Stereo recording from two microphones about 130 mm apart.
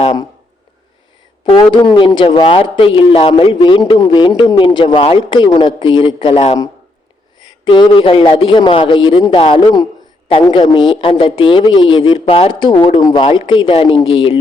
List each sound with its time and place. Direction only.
1.5 s speech: 30° left (ahead or behind); by 6.6 s 50° left (ahead or behind)
7.6 s speech: 40° left (ahead or behind)